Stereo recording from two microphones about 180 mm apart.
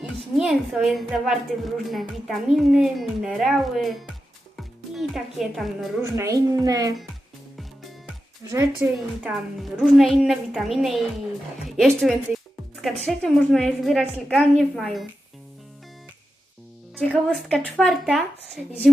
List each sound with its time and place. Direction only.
0.0 s a woman's voice: 5° right (ahead or behind)
6.0 s a child's voice: 15° right (ahead or behind)
8.4 s a woman's voice: 15° right (ahead or behind)
9.6 s a woman's voice: centre (ahead or behind)
17.2 s a woman's voice: 5° left (ahead or behind)